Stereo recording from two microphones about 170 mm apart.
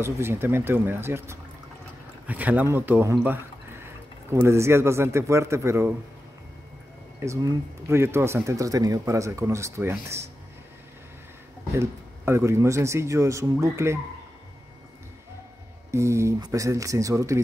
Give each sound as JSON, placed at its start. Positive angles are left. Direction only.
{"t": 0.0, "sound": "speech", "side_deg": -15}
{"t": 7.2, "sound": "speech", "side_deg": -15}
{"t": 11.7, "sound": "speech", "side_deg": -15}
{"t": 15.9, "sound": "speech", "side_deg": -15}